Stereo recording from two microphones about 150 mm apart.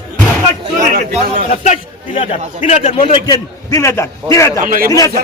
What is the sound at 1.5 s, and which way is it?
A man's voice, 50° left (ahead or behind).